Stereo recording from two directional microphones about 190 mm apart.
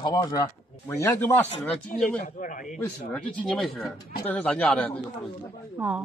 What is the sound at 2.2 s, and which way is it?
Speech, 45° left (ahead or behind).